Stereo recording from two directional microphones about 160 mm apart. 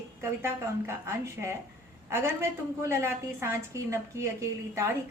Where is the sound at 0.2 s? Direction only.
15° right (ahead or behind).